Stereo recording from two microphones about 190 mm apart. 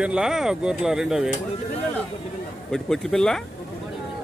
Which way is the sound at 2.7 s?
Centre (ahead or behind).